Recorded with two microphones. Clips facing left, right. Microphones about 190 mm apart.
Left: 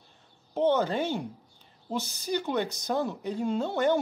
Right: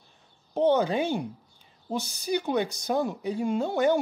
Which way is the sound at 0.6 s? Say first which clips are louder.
Right 2 dB; 15° right (ahead or behind).